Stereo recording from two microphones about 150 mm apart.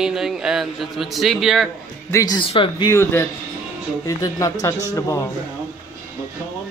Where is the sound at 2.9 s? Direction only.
15° left (ahead or behind).